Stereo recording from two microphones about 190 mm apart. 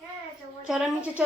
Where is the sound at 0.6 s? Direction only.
Centre (ahead or behind).